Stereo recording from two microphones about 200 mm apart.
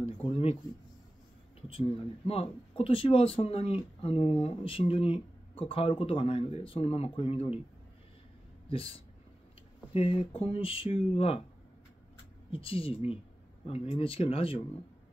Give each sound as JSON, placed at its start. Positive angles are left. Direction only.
{"t": 0.0, "sound": "speech", "side_deg": 30}
{"t": 1.7, "sound": "speech", "side_deg": 30}
{"t": 8.6, "sound": "speech", "side_deg": 30}
{"t": 12.4, "sound": "speech", "side_deg": 25}